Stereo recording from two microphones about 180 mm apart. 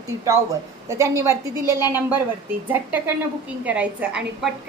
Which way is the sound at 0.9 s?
15° right (ahead or behind).